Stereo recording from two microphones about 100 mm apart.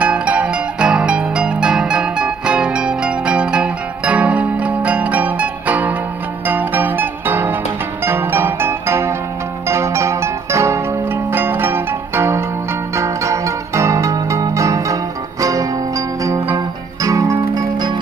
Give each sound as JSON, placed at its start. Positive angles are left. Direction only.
{"t": 0.0, "sound": "music", "side_deg": -10}